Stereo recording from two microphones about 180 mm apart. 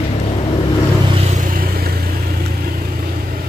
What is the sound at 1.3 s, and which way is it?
Vehicle, 50° right (ahead or behind).